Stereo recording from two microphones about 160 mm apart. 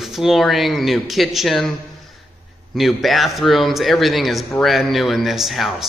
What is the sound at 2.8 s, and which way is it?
Speech, centre (ahead or behind).